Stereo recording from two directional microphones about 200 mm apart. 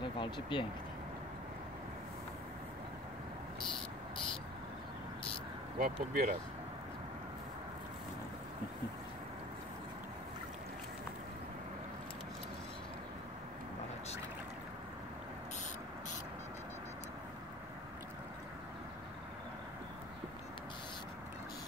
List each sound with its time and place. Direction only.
0.2 s speech: 25° left (ahead or behind)
5.8 s speech: 40° right (ahead or behind)